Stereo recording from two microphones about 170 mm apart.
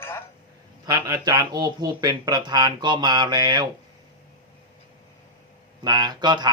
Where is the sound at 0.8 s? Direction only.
20° right (ahead or behind).